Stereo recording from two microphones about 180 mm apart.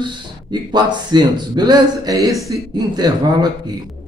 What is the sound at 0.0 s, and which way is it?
A man's voice, 25° right (ahead or behind).